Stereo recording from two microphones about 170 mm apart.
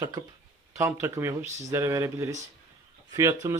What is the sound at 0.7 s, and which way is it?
A man's voice, 15° right (ahead or behind).